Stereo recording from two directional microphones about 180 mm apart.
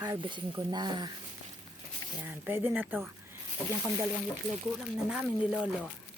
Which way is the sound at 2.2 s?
10° right (ahead or behind).